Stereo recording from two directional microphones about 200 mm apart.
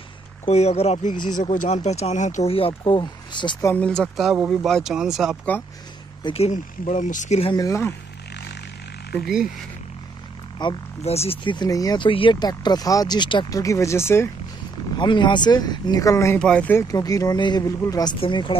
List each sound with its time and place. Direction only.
0.5 s speech: 30° left (ahead or behind)
1.4 s speech: 40° left (ahead or behind); by 3.7 s 20° left (ahead or behind)
3.7 s speech: 5° left (ahead or behind)
6.2 s speech: 30° left (ahead or behind)
7.5 s speech: 15° left (ahead or behind)
10.6 s speech: 25° left (ahead or behind)
15.0 s speech: 25° left (ahead or behind)